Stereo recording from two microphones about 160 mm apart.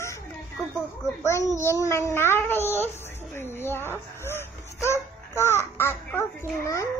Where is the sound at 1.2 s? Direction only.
15° left (ahead or behind).